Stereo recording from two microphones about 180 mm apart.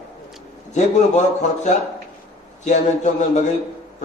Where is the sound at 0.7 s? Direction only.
40° left (ahead or behind).